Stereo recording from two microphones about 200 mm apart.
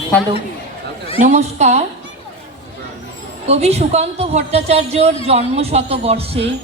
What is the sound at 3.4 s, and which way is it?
A woman's voice, 30° right (ahead or behind).